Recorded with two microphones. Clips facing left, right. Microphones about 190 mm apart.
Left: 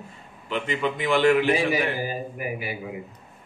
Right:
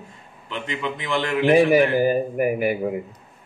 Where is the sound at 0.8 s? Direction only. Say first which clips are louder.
Left 2 dB; 10° left (ahead or behind).